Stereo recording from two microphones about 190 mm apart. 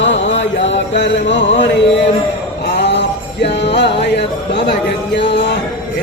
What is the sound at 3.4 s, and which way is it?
Speech, 65° left (ahead or behind).